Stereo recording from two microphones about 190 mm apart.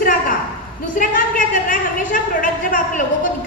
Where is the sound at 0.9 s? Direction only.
45° left (ahead or behind).